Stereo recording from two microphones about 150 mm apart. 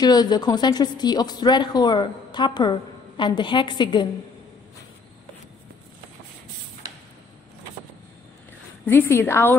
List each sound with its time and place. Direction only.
0.0 s a woman's voice: 25° left (ahead or behind)
8.8 s a woman's voice: 15° left (ahead or behind)